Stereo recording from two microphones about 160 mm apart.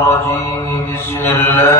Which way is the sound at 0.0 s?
15° left (ahead or behind).